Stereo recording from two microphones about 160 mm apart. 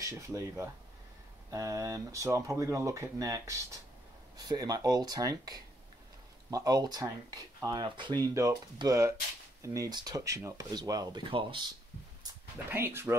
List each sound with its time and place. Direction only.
0.0 s speech: 20° right (ahead or behind)
12.7 s speech: 15° right (ahead or behind)